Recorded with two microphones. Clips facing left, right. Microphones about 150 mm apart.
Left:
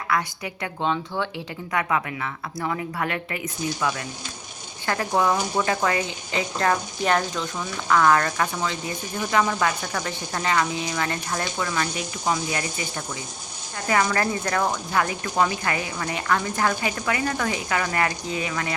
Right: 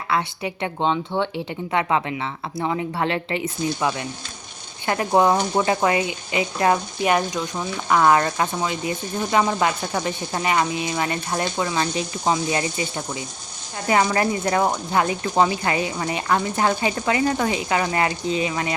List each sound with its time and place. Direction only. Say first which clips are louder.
0.1 s speech: right 3 dB; 25° right (ahead or behind)